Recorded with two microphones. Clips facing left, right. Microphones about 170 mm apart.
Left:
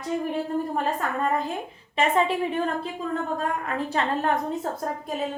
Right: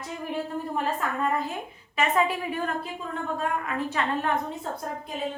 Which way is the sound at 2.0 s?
30° left (ahead or behind).